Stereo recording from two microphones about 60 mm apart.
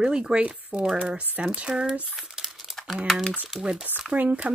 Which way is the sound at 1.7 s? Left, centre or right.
Centre.